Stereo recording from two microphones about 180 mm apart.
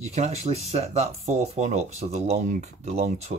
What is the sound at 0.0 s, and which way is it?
Speech, 40° right (ahead or behind).